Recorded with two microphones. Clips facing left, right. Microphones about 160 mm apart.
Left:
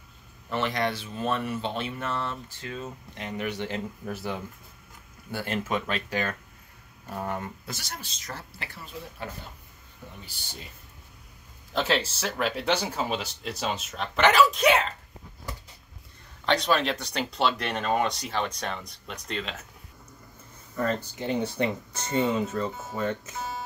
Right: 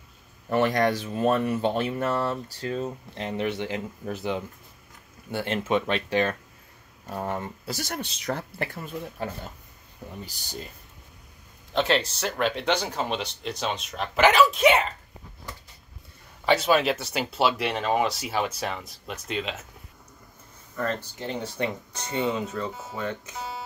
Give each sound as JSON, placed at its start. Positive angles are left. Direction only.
{"t": 0.5, "sound": "speech", "side_deg": -45}
{"t": 3.6, "sound": "speech", "side_deg": -15}
{"t": 7.7, "sound": "speech", "side_deg": -50}
{"t": 8.0, "sound": "speech", "side_deg": -65}
{"t": 11.7, "sound": "speech", "side_deg": 5}
{"t": 16.4, "sound": "speech", "side_deg": -5}
{"t": 20.7, "sound": "speech", "side_deg": 5}